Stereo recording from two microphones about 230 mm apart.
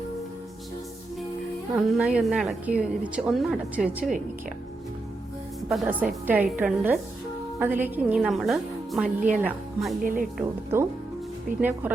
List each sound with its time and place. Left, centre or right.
1.7 s a woman's voice: centre
5.6 s a woman's voice: centre
9.0 s speech: right
9.4 s a woman's voice: centre
10.0 s speech: right
10.4 s speech: centre